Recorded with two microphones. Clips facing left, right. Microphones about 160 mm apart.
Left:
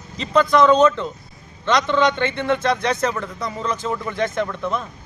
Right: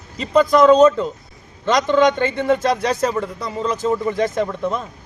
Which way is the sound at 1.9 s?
40° right (ahead or behind).